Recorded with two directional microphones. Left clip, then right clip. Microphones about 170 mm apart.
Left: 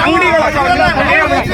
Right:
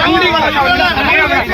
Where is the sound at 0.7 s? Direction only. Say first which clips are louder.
Left 1 dB; 55° left (ahead or behind).